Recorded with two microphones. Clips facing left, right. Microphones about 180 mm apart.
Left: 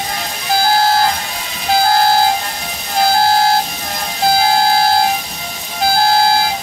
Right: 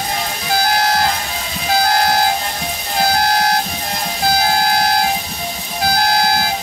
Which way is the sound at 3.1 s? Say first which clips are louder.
Left 5 dB; 30° left (ahead or behind).